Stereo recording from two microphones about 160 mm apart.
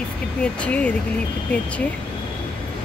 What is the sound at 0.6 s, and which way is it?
Speech, 10° left (ahead or behind).